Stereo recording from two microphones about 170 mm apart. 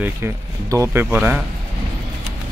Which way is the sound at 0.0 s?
15° right (ahead or behind).